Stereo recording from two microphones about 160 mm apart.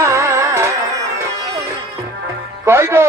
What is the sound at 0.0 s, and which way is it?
Music, 15° right (ahead or behind).